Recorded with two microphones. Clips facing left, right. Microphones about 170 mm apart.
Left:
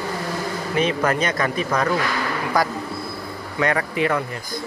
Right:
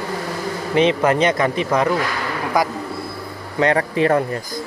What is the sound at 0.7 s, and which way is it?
Speech, 25° right (ahead or behind).